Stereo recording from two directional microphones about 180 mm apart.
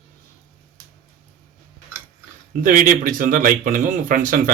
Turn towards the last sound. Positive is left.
turn(degrees=-50)  # may be behind; listen again after turning